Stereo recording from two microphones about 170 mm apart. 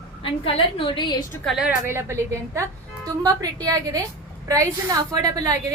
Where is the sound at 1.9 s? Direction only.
15° right (ahead or behind).